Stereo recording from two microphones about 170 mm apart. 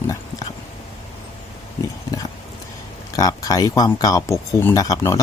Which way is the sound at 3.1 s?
20° left (ahead or behind).